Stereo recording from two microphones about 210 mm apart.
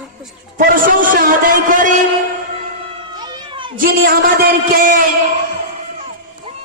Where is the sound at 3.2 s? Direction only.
20° right (ahead or behind).